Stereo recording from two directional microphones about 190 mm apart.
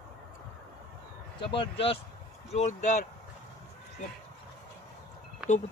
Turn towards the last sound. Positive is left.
turn(degrees=-5)  # may be behind; listen again after turning